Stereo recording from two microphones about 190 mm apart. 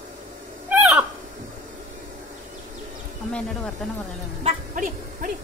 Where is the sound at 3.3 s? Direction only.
5° left (ahead or behind).